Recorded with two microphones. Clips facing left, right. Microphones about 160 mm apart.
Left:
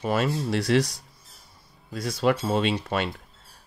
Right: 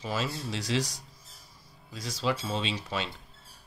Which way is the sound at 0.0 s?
60° left (ahead or behind).